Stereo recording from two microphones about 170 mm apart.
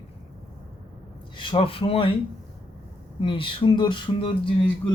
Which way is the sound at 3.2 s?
30° left (ahead or behind).